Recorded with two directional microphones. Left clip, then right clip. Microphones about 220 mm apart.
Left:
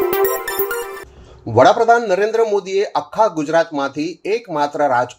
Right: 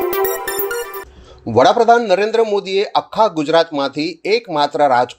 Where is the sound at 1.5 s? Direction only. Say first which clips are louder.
Even; 20° right (ahead or behind).